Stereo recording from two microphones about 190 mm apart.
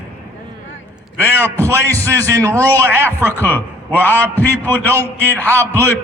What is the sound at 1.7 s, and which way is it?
A man's voice, 15° right (ahead or behind).